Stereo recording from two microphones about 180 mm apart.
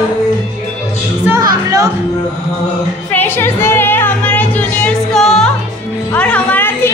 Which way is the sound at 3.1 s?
10° left (ahead or behind).